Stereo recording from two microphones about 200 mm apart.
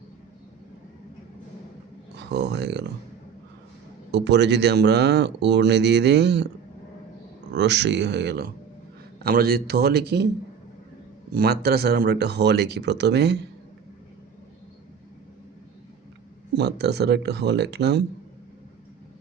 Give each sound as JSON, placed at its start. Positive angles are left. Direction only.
{"t": 2.3, "sound": "speech", "side_deg": -60}
{"t": 4.1, "sound": "speech", "side_deg": -60}
{"t": 7.5, "sound": "a man's voice", "side_deg": -60}
{"t": 11.3, "sound": "speech", "side_deg": -50}
{"t": 16.6, "sound": "speech", "side_deg": -55}